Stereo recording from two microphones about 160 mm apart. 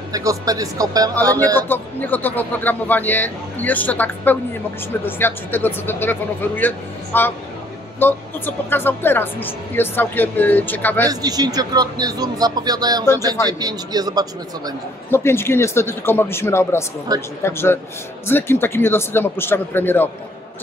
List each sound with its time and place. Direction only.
0.1 s speech: 20° right (ahead or behind)
1.7 s speech: 10° left (ahead or behind)
11.1 s speech: 25° right (ahead or behind)
15.0 s speech: 15° left (ahead or behind)